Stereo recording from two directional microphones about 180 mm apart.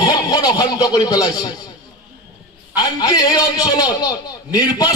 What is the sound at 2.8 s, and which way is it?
A man's voice, 25° left (ahead or behind).